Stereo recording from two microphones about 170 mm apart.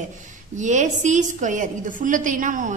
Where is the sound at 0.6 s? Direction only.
45° right (ahead or behind).